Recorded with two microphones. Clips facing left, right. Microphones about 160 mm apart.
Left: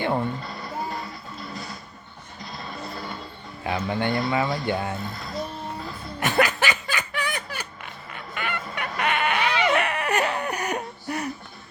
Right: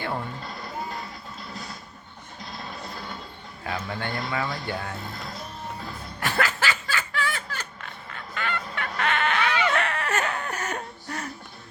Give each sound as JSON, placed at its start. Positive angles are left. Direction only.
{"t": 3.7, "sound": "speech", "side_deg": 20}
{"t": 6.1, "sound": "snicker", "side_deg": 20}